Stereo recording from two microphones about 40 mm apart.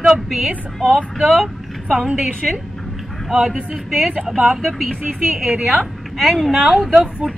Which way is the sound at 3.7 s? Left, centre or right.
Centre.